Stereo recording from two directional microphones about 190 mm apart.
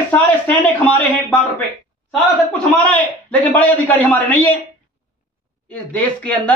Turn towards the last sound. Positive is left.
turn(degrees=5)  # may be behind; listen again after turning